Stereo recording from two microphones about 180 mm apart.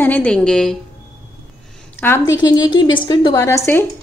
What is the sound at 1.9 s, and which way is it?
Speech, 10° left (ahead or behind).